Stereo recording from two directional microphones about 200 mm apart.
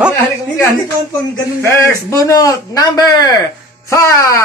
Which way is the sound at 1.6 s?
15° left (ahead or behind).